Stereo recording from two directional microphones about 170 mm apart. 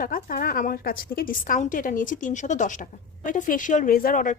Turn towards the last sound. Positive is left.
turn(degrees=50)  # may be behind; listen again after turning